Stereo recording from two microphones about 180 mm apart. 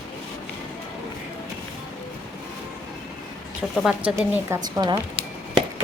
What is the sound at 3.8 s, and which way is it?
A woman's voice, 5° right (ahead or behind).